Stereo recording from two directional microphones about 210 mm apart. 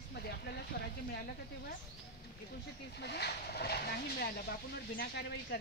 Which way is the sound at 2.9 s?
50° left (ahead or behind).